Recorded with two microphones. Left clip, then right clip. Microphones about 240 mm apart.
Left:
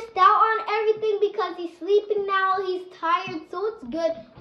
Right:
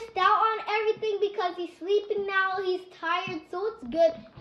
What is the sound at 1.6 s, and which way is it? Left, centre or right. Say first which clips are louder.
A child's voice: left 8 dB; centre.